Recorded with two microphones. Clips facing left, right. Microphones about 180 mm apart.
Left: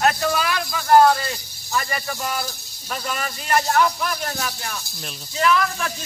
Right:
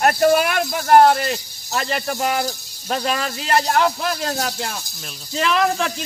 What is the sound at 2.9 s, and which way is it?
Speech, 80° right.